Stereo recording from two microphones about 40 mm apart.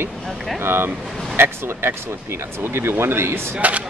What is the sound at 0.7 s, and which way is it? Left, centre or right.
Speech, right.